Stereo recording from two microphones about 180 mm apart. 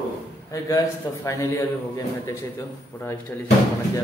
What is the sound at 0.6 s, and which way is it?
Speech, 20° left (ahead or behind).